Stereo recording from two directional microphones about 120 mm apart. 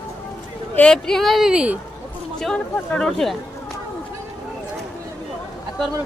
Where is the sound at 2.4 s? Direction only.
5° left (ahead or behind).